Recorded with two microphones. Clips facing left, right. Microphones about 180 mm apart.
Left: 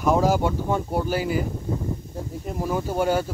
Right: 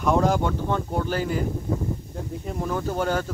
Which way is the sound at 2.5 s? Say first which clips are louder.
Left 1 dB; 5° left (ahead or behind).